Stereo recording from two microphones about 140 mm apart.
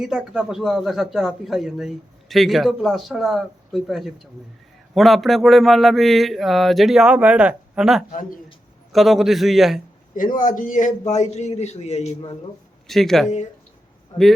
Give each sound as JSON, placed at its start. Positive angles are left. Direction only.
{"t": 0.0, "sound": "a man's voice", "side_deg": -5}
{"t": 8.1, "sound": "a man's voice", "side_deg": 70}
{"t": 8.9, "sound": "a man's voice", "side_deg": 0}
{"t": 10.3, "sound": "a man's voice", "side_deg": 70}
{"t": 12.9, "sound": "a man's voice", "side_deg": 0}